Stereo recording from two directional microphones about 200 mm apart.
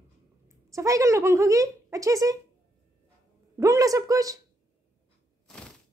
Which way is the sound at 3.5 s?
15° right (ahead or behind).